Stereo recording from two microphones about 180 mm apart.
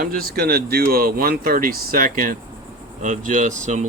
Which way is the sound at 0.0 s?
55° right (ahead or behind).